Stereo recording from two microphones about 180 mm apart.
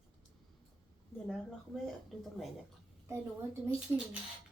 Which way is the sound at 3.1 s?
10° right (ahead or behind).